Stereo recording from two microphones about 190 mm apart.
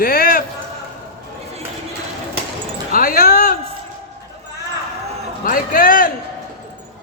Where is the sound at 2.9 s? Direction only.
50° left (ahead or behind).